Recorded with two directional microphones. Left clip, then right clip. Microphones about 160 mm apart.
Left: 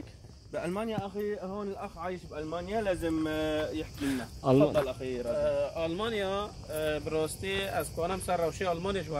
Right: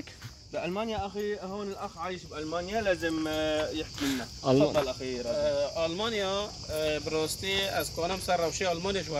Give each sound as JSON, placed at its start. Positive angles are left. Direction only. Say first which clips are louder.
{"t": 0.6, "sound": "speech", "louder": "right 2 dB", "side_deg": 10}
{"t": 1.7, "sound": "speech", "louder": "right 1 dB", "side_deg": 10}
{"t": 4.0, "sound": "speech", "louder": "right 1 dB", "side_deg": 10}
{"t": 6.7, "sound": "speech", "louder": "right 2 dB", "side_deg": 0}